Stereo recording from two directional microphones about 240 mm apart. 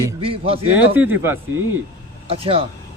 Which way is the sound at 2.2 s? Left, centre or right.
Right.